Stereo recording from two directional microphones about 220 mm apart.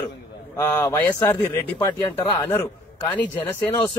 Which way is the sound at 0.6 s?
15° left (ahead or behind).